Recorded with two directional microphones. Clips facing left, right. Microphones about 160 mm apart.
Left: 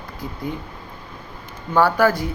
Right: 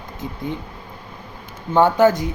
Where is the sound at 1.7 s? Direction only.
20° right (ahead or behind).